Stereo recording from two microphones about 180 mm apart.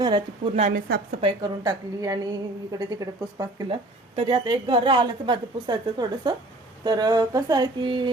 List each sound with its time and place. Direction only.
0.0 s a woman's voice: 25° right (ahead or behind)
0.7 s a woman's voice: 55° right (ahead or behind)
1.2 s a woman's voice: 20° right (ahead or behind)